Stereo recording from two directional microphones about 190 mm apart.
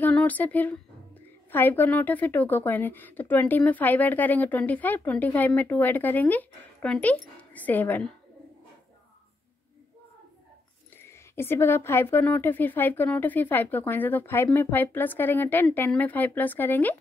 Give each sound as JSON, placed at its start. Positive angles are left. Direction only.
{"t": 0.0, "sound": "a woman's voice", "side_deg": 5}
{"t": 11.0, "sound": "a woman's voice", "side_deg": 10}